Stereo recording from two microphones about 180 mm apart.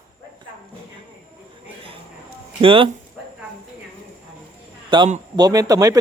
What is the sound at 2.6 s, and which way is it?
Speech, 30° right (ahead or behind).